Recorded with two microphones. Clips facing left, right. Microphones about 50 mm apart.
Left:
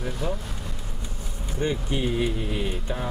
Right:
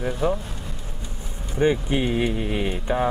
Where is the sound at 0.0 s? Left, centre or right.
Right.